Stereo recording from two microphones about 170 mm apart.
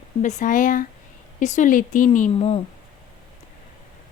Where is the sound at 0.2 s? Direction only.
45° left (ahead or behind).